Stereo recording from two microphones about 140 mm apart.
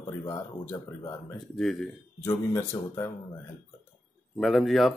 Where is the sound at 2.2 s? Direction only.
20° left (ahead or behind).